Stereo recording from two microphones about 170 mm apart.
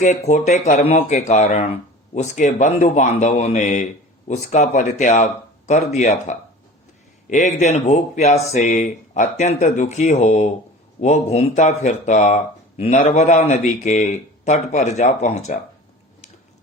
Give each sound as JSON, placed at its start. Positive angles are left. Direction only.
{"t": 0.0, "sound": "speech", "side_deg": 45}